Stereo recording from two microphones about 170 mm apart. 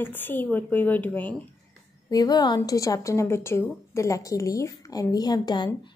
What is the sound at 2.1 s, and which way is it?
A woman's voice, 25° left (ahead or behind).